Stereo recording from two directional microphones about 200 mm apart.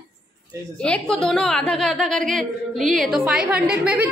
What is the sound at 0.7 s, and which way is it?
A woman's voice, 5° left (ahead or behind).